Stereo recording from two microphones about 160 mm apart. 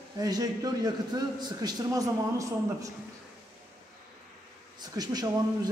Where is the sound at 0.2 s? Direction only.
25° right (ahead or behind).